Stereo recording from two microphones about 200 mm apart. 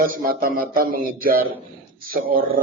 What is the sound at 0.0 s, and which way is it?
Speech, 45° right (ahead or behind).